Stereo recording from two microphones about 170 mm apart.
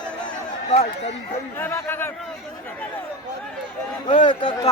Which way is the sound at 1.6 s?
15° left (ahead or behind).